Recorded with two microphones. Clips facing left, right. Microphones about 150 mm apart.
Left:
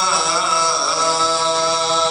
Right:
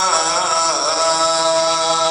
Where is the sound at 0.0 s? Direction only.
70° right (ahead or behind).